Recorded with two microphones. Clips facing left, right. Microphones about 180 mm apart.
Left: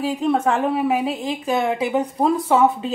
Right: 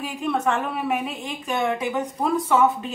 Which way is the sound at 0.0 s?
35° left (ahead or behind).